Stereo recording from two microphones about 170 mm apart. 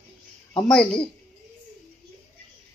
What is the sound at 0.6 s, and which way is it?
Speech, 5° left (ahead or behind).